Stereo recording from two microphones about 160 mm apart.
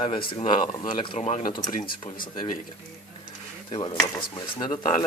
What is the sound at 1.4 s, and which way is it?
Speech, 25° left (ahead or behind).